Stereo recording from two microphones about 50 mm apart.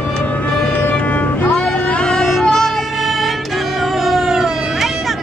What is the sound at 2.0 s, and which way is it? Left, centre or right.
Music, centre.